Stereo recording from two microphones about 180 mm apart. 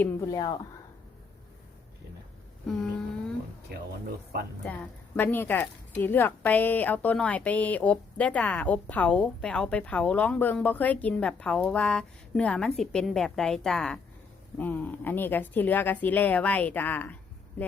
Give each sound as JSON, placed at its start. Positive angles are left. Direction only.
{"t": 0.0, "sound": "speech", "side_deg": 15}
{"t": 4.6, "sound": "a woman's voice", "side_deg": 10}